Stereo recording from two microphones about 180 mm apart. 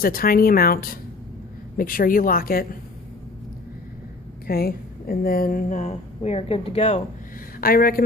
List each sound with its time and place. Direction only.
0.0 s a woman's voice: 55° left (ahead or behind)
4.4 s a woman's voice: 55° left (ahead or behind); by 7.0 s 35° left (ahead or behind)
7.6 s speech: 55° left (ahead or behind)